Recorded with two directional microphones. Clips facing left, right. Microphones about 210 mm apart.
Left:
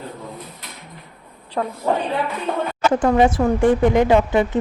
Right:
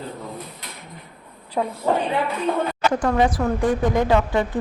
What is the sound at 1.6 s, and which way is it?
Speech, 15° right (ahead or behind).